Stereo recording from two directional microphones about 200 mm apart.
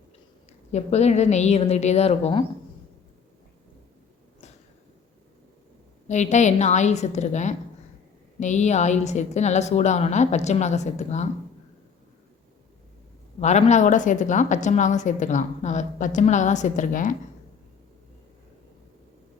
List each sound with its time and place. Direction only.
0.7 s a woman's voice: 35° left (ahead or behind)
6.1 s a woman's voice: 35° left (ahead or behind)
13.4 s a woman's voice: 35° left (ahead or behind)